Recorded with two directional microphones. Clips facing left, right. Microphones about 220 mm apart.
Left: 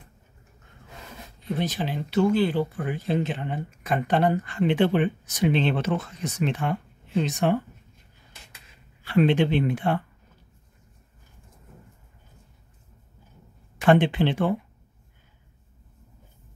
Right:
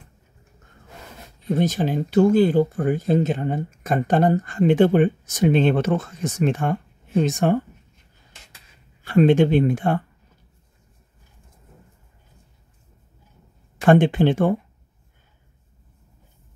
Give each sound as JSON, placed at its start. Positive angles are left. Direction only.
{"t": 1.6, "sound": "speech", "side_deg": -45}
{"t": 9.0, "sound": "speech", "side_deg": -45}
{"t": 13.7, "sound": "speech", "side_deg": -45}